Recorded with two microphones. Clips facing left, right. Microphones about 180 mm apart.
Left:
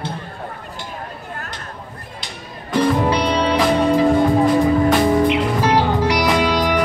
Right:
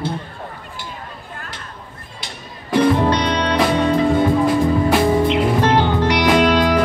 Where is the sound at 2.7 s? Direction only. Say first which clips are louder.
Right 2 dB; 5° left (ahead or behind).